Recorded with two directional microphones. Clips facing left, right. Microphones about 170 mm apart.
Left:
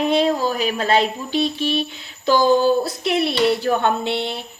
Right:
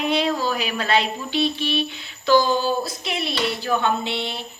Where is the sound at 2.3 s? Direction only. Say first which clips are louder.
Left 3 dB; 50° left (ahead or behind).